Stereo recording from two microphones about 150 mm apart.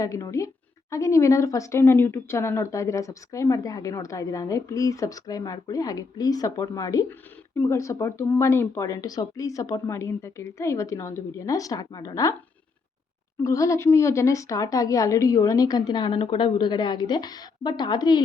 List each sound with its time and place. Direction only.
0.0 s a woman's voice: 20° left (ahead or behind)
13.4 s a woman's voice: 20° left (ahead or behind)